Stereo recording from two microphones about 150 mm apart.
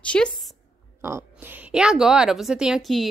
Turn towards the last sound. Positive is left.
turn(degrees=0)  # may be behind; listen again after turning